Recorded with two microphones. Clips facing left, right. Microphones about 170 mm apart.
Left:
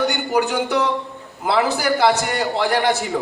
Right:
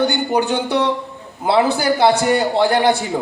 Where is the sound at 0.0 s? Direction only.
30° right (ahead or behind).